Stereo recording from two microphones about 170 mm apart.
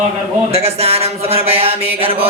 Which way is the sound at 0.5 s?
35° right (ahead or behind).